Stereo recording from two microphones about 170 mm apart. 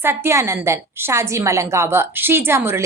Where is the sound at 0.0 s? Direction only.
15° right (ahead or behind).